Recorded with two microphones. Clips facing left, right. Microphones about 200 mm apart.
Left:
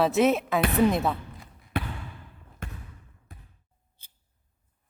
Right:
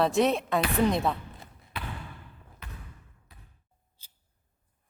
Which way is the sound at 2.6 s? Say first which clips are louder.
Left 6 dB; 50° left (ahead or behind).